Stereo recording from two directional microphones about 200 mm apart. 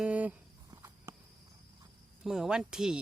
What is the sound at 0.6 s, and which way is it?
Walk, 10° right (ahead or behind).